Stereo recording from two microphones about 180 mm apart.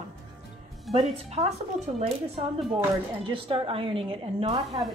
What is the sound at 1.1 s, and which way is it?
Speech, 35° right (ahead or behind).